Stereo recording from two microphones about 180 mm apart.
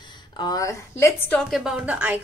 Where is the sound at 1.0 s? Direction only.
10° left (ahead or behind); by 2.2 s 5° right (ahead or behind).